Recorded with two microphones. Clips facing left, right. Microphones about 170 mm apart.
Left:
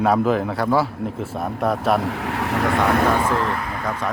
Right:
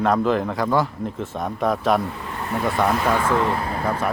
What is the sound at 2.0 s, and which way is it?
Speech, 90° left.